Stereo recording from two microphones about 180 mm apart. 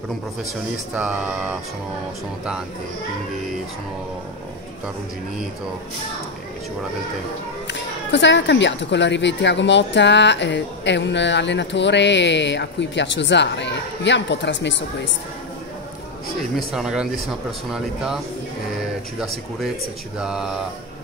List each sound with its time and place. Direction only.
0.9 s speech: 5° right (ahead or behind)
7.6 s speech: 80° left
16.5 s speech: 5° right (ahead or behind)
20.2 s speech: 5° right (ahead or behind)